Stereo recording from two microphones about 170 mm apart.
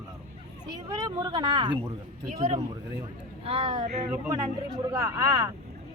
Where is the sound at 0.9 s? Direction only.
25° right (ahead or behind).